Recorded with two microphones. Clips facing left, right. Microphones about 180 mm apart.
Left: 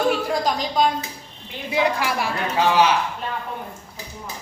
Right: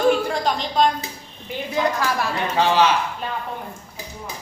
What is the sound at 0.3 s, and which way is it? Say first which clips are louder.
A woman's voice: left 1 dB; 5° left (ahead or behind).